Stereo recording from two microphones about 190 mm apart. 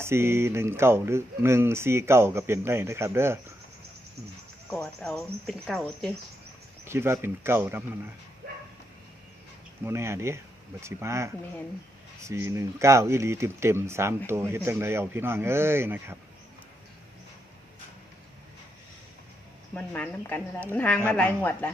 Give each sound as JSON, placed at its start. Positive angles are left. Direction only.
{"t": 0.0, "sound": "speech", "side_deg": -15}
{"t": 4.7, "sound": "speech", "side_deg": 5}
{"t": 6.8, "sound": "speech", "side_deg": -15}
{"t": 9.8, "sound": "speech", "side_deg": -15}
{"t": 19.7, "sound": "speech", "side_deg": 10}